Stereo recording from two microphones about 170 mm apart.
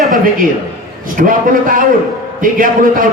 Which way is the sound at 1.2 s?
55° right (ahead or behind).